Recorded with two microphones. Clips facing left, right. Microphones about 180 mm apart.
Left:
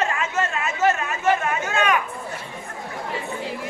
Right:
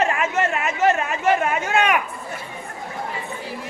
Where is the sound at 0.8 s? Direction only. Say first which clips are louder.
Right 1 dB; 30° right (ahead or behind).